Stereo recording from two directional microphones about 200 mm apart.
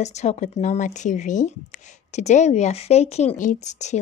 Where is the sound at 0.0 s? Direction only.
35° left (ahead or behind).